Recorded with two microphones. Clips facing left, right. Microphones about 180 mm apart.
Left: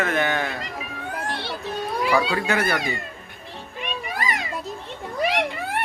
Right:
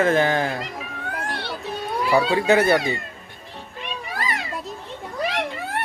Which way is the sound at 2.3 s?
25° right (ahead or behind).